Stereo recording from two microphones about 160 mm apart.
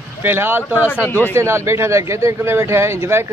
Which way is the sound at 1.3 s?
15° right (ahead or behind).